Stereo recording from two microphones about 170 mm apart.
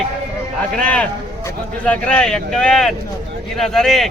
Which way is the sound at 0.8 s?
5° left (ahead or behind).